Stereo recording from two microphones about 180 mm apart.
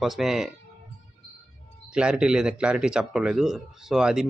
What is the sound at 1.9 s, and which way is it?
Speech, 5° right (ahead or behind).